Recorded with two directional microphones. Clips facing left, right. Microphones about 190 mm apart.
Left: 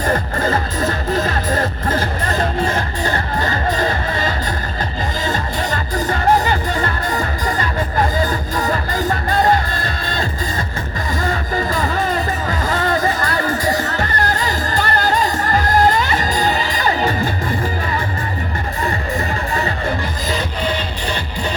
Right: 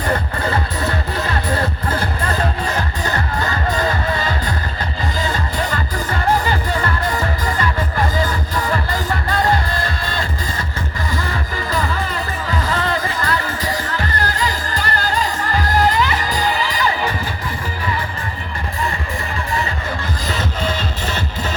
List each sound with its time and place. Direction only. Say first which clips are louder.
0.3 s music: left 3 dB; 45° left (ahead or behind)
3.4 s music: left 1 dB; 45° left (ahead or behind)
8.3 s music: left 2 dB; 45° left (ahead or behind)
12.6 s music: left 5 dB; 45° left (ahead or behind)